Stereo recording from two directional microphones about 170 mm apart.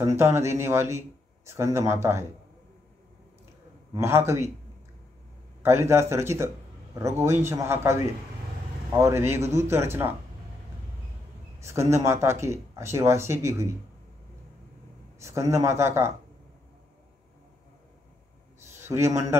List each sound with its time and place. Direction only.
0.0 s a man's voice: 15° right (ahead or behind)
3.9 s a man's voice: 15° right (ahead or behind)
5.6 s a man's voice: 15° right (ahead or behind)
11.6 s a man's voice: 15° right (ahead or behind)
15.1 s a man's voice: 15° right (ahead or behind)
18.8 s a man's voice: 15° right (ahead or behind)